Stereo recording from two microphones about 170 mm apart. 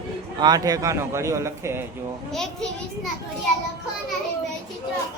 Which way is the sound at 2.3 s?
Centre (ahead or behind).